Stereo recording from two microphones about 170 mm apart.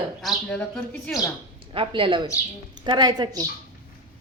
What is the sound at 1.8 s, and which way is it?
A woman's voice, 30° right (ahead or behind).